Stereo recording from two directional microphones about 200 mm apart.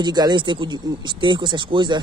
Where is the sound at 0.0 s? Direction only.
20° right (ahead or behind).